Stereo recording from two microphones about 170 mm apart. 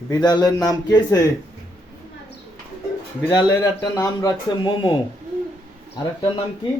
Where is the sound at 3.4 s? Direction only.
20° left (ahead or behind).